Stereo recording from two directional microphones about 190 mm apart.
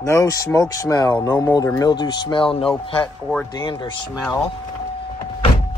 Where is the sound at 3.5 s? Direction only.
25° left (ahead or behind).